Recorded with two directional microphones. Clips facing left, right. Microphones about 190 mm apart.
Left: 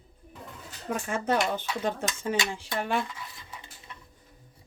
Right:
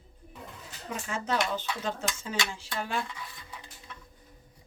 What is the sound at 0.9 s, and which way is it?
Speech, 55° left (ahead or behind).